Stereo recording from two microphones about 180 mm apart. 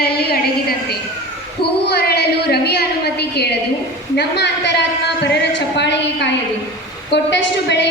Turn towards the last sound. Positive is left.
turn(degrees=75)  # may be behind; listen again after turning